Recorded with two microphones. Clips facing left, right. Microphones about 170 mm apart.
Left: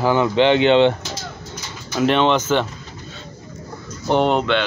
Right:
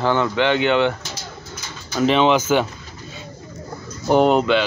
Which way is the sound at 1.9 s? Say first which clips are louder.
Right 1 dB; centre (ahead or behind).